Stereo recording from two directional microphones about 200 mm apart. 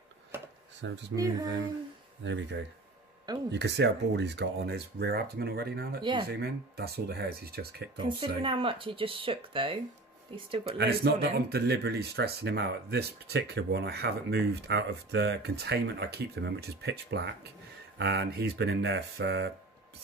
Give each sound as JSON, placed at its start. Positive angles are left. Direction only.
{"t": 1.1, "sound": "speech", "side_deg": -15}
{"t": 2.2, "sound": "speech", "side_deg": -65}
{"t": 8.0, "sound": "speech", "side_deg": -25}
{"t": 11.0, "sound": "speech", "side_deg": -55}